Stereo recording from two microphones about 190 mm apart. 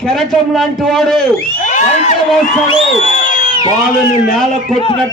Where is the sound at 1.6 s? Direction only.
40° left (ahead or behind).